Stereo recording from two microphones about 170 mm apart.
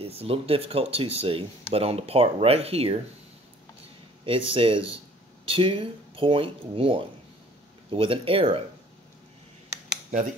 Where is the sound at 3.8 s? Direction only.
30° right (ahead or behind).